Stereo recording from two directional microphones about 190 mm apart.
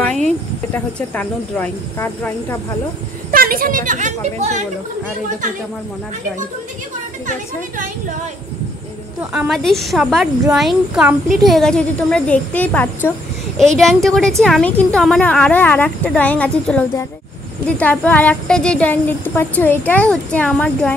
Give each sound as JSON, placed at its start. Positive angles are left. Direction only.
{"t": 0.7, "sound": "speech", "side_deg": 5}
{"t": 3.3, "sound": "speech", "side_deg": -50}
{"t": 9.3, "sound": "a woman's voice", "side_deg": 0}